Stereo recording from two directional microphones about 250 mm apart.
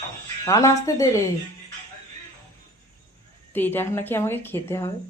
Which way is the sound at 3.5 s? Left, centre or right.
Centre.